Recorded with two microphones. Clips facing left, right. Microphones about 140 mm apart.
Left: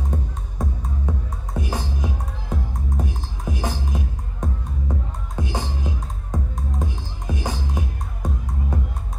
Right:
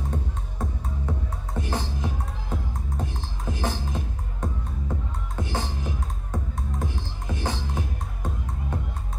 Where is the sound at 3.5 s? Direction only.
15° left (ahead or behind).